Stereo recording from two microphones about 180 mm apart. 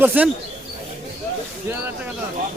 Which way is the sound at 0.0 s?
10° right (ahead or behind).